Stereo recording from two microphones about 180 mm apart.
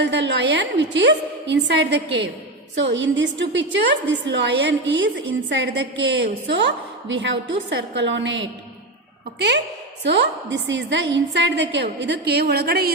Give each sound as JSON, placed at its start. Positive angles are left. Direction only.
{"t": 0.0, "sound": "a woman's voice", "side_deg": -75}
{"t": 10.0, "sound": "a woman's voice", "side_deg": -75}